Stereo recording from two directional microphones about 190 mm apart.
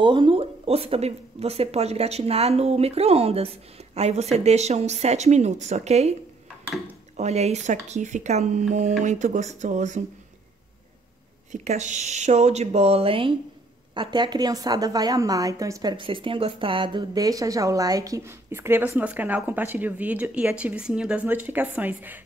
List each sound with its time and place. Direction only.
0.0 s speech: 25° right (ahead or behind)
7.2 s speech: 35° right (ahead or behind)
11.5 s a woman's voice: 35° right (ahead or behind); by 22.2 s 10° right (ahead or behind)